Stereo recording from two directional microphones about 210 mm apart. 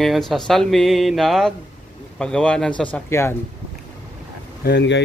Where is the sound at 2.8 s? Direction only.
10° left (ahead or behind).